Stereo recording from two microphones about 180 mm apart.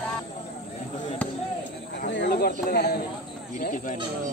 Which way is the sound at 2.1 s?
65° left (ahead or behind).